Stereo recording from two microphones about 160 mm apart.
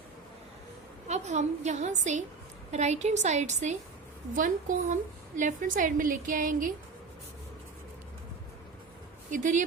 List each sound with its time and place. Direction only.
1.0 s a woman's voice: 45° right (ahead or behind)
9.3 s a woman's voice: 50° right (ahead or behind)